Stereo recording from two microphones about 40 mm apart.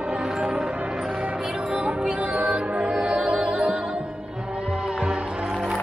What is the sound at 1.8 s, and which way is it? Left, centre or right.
Music, right.